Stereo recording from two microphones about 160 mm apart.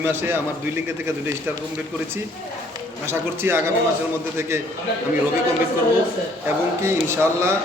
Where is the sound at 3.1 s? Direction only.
15° right (ahead or behind).